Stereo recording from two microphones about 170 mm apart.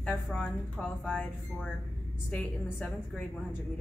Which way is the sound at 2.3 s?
5° left (ahead or behind).